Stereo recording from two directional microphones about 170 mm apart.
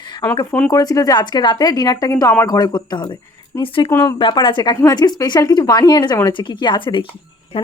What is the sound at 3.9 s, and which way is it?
Speech, 15° left (ahead or behind).